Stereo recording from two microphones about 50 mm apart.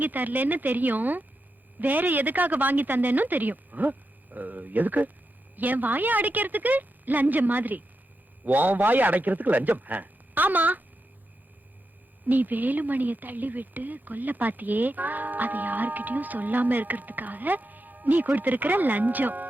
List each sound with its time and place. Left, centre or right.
0.0 s speech: right
12.3 s speech: right